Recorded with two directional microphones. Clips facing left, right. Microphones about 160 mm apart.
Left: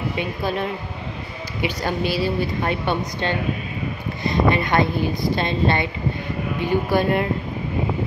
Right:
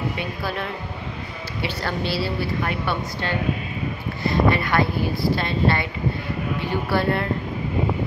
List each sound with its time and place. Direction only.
0.2 s a woman's voice: 20° left (ahead or behind)
6.9 s a woman's voice: 15° left (ahead or behind)